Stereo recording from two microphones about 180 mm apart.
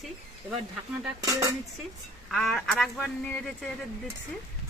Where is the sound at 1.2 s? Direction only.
20° right (ahead or behind).